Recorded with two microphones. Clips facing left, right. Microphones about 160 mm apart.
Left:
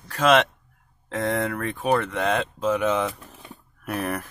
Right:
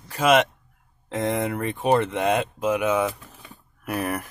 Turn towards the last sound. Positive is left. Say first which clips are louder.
# right 1 dB
turn(degrees=-5)  # may be behind; listen again after turning